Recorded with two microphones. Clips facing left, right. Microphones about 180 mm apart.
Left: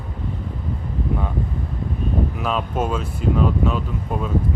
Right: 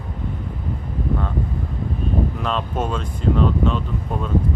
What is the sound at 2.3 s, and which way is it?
Speech, 5° left (ahead or behind).